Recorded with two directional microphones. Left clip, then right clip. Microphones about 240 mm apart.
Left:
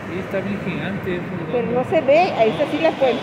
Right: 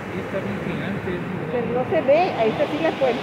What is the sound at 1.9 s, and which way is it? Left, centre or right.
Speech, left.